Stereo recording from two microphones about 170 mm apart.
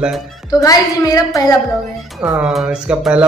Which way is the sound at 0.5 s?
20° left (ahead or behind).